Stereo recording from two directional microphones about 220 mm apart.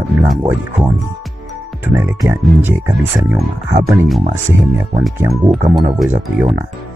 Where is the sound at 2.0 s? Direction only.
15° right (ahead or behind).